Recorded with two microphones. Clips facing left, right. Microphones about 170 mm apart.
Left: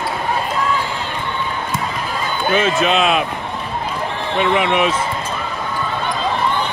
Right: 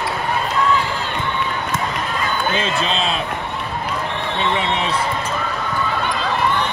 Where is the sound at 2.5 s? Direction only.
30° right (ahead or behind).